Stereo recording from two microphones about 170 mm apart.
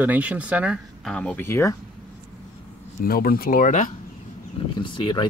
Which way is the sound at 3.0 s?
60° left (ahead or behind).